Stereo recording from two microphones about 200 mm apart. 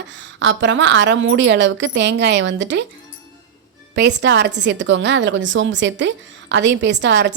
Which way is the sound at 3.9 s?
60° right (ahead or behind).